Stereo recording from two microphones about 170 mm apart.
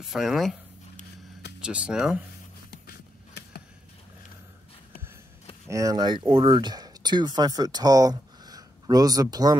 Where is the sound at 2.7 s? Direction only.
70° left (ahead or behind).